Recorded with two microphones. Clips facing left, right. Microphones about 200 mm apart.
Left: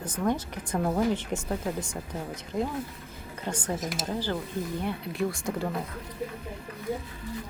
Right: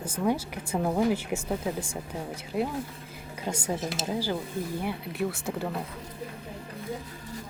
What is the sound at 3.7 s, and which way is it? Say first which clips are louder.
Speech: right 1 dB; 30° right (ahead or behind).